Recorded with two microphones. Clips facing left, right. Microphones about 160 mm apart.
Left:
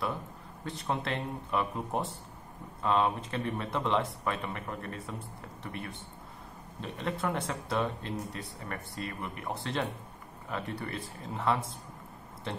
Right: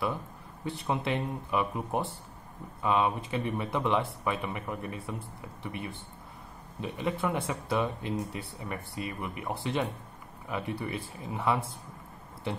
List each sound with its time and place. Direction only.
0.7 s speech: 10° right (ahead or behind)